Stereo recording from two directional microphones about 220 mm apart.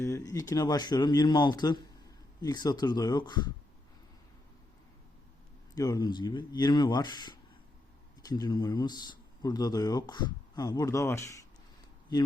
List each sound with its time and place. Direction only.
0.0 s speech: 15° left (ahead or behind)
5.7 s speech: 15° left (ahead or behind)